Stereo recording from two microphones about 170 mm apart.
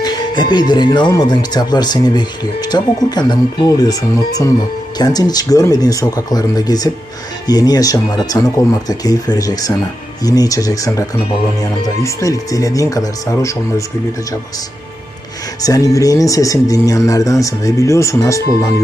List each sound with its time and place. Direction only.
0.0 s speech: 25° left (ahead or behind)
15.6 s speech: 20° left (ahead or behind)